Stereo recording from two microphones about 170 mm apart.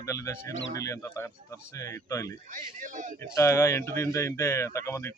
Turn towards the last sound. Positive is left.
turn(degrees=15)  # may be behind; listen again after turning